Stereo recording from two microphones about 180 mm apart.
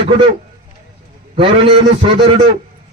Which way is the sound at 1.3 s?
30° right (ahead or behind).